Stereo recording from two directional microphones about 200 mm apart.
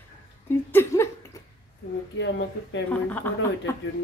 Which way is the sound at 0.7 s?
10° left (ahead or behind).